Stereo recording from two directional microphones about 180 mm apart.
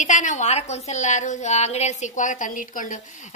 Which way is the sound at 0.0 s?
45° left (ahead or behind).